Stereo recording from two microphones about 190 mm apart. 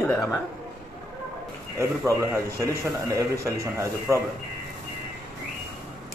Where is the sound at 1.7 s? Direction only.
15° right (ahead or behind).